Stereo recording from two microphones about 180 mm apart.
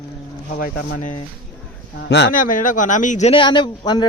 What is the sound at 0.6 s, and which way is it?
Speech, 45° left (ahead or behind).